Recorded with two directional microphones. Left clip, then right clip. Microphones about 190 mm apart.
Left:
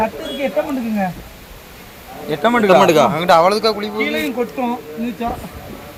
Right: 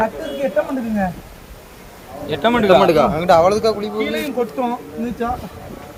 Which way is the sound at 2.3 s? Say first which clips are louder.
Left 1 dB; 35° left (ahead or behind).